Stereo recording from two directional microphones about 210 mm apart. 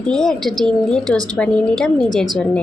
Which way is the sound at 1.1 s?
15° right (ahead or behind).